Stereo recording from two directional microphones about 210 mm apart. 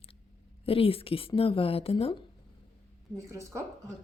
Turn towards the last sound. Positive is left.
turn(degrees=-15)  # may be behind; listen again after turning